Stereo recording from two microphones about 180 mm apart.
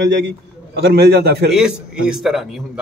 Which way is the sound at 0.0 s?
75° right (ahead or behind).